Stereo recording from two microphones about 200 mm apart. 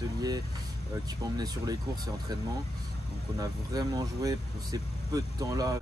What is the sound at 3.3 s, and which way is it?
Speech, 20° right (ahead or behind).